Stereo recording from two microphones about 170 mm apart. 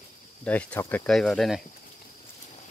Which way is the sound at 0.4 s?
5° left (ahead or behind).